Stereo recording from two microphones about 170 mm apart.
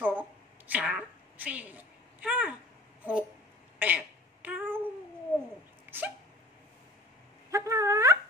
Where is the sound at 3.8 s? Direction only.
10° right (ahead or behind).